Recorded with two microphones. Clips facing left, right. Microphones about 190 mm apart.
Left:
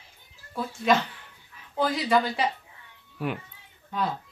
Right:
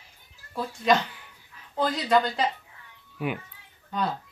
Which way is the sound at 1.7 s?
5° left (ahead or behind).